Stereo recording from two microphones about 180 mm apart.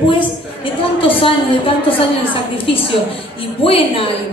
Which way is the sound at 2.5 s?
30° left (ahead or behind).